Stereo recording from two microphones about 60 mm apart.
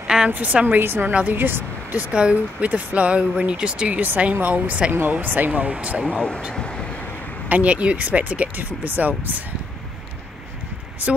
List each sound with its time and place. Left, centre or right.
0.0 s a sound: centre
0.3 s speech: right
0.7 s speech: right
1.9 s speech: right
4.0 s speech: right
5.5 s speech: centre
6.1 s speech: centre
6.5 s vehicle: centre
7.4 s speech: right